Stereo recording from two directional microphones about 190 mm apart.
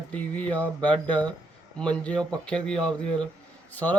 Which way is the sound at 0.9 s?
25° right (ahead or behind).